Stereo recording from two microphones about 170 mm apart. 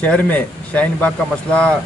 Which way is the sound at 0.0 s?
5° left (ahead or behind).